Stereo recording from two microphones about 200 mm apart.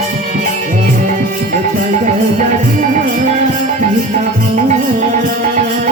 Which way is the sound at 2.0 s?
40° right (ahead or behind).